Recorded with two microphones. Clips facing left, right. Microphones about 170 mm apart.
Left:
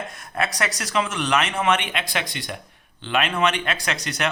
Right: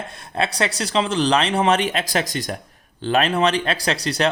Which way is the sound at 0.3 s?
30° right (ahead or behind).